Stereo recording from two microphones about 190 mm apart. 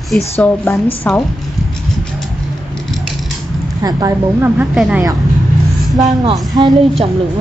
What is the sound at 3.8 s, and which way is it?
Speech, 20° right (ahead or behind).